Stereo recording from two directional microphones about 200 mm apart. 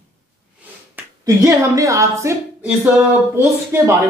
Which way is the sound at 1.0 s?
15° right (ahead or behind).